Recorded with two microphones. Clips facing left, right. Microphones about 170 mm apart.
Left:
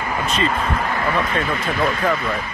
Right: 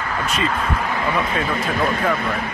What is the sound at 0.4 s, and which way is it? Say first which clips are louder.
Speech: left 1 dB; 5° left (ahead or behind).